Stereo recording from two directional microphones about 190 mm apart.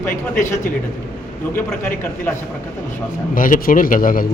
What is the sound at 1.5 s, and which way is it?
Speech, 10° left (ahead or behind).